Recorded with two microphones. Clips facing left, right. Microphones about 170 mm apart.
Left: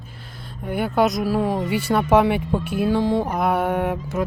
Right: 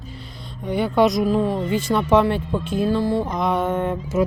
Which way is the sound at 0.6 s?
5° left (ahead or behind).